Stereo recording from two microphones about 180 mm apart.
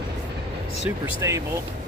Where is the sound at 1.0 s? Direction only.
15° right (ahead or behind).